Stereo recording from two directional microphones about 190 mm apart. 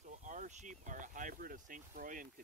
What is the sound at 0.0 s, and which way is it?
Speech, 40° right (ahead or behind).